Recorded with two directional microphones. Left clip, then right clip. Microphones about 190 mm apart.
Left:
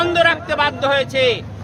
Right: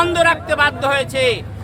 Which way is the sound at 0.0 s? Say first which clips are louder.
Even; 5° right (ahead or behind).